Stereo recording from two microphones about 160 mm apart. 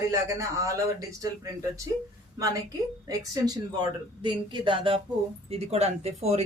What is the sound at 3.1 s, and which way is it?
Speech, 25° right (ahead or behind).